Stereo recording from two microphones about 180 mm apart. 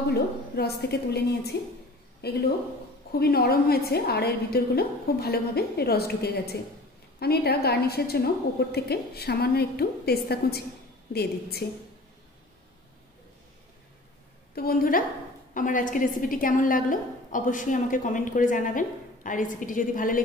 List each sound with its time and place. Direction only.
0.1 s a woman's voice: 60° left (ahead or behind)
11.6 s a woman's voice: 65° left (ahead or behind)
14.5 s a woman's voice: 55° left (ahead or behind)